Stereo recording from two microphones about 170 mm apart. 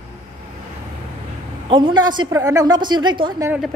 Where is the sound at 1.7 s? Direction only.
25° right (ahead or behind).